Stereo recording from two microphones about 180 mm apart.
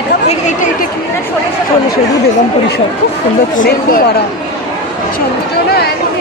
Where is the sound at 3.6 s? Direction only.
50° left (ahead or behind).